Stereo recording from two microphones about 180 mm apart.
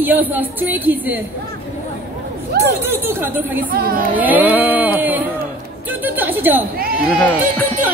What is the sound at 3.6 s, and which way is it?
Speech, 55° right (ahead or behind).